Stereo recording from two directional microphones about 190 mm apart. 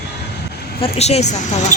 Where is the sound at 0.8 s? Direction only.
35° left (ahead or behind).